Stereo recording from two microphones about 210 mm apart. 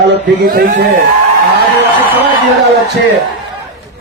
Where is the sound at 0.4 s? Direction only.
45° right (ahead or behind).